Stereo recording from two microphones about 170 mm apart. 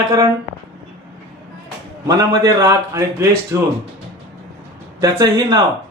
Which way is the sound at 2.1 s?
20° right (ahead or behind).